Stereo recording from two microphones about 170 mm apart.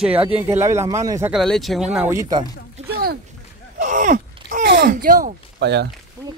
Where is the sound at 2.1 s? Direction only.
20° right (ahead or behind).